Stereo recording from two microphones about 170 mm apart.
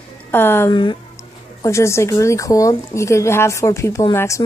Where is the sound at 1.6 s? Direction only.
15° left (ahead or behind).